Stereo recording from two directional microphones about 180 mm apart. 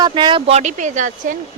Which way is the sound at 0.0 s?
25° right (ahead or behind).